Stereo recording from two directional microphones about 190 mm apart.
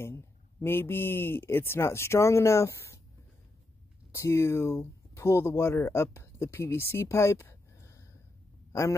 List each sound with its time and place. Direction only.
0.0 s speech: 10° left (ahead or behind)
4.1 s speech: 15° left (ahead or behind)